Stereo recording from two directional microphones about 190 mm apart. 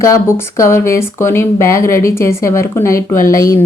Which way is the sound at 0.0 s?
15° left (ahead or behind).